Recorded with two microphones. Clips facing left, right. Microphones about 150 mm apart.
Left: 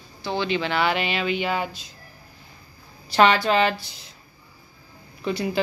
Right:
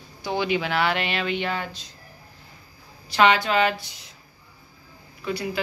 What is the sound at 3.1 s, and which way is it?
Speech, 35° left (ahead or behind).